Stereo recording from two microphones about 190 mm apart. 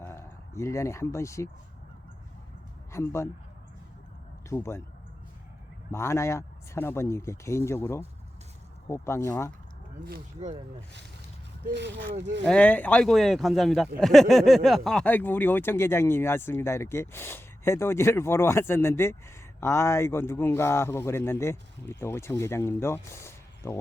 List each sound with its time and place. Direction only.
0.0 s speech: 15° left (ahead or behind)
2.9 s speech: 15° left (ahead or behind)
4.4 s speech: 15° left (ahead or behind)
5.9 s speech: 15° left (ahead or behind)
11.7 s speech: 65° right (ahead or behind)
12.5 s speech: 5° left (ahead or behind)